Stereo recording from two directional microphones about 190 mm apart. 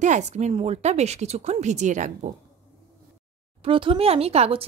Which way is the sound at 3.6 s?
25° right (ahead or behind).